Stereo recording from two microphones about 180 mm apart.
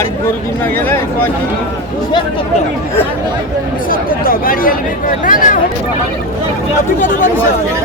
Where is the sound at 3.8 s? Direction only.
55° left (ahead or behind).